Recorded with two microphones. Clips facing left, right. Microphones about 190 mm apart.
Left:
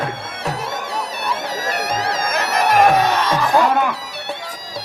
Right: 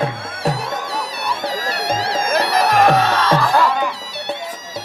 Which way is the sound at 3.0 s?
15° left (ahead or behind).